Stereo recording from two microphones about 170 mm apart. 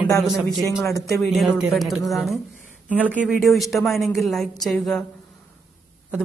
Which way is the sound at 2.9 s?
10° right (ahead or behind).